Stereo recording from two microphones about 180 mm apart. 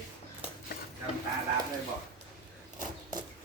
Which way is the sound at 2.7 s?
20° right (ahead or behind).